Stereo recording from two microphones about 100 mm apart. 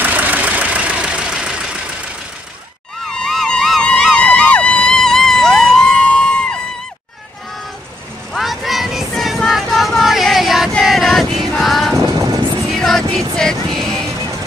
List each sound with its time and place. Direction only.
0.0 s vehicle: 15° right (ahead or behind)
3.1 s a sound: 5° left (ahead or behind)
4.2 s vehicle: 15° left (ahead or behind)
8.3 s music: centre (ahead or behind)
12.0 s vehicle: 40° right (ahead or behind)
12.7 s music: 5° left (ahead or behind)